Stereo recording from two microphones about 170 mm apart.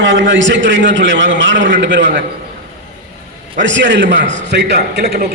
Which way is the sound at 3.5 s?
90° right.